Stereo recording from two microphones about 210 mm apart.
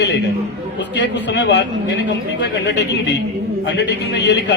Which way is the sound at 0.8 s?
55° left (ahead or behind).